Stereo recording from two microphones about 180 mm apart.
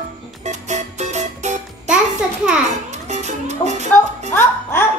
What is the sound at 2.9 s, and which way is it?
Music, 40° right (ahead or behind).